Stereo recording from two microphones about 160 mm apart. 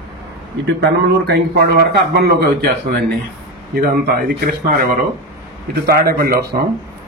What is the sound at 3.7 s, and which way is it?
Speech, 65° right (ahead or behind).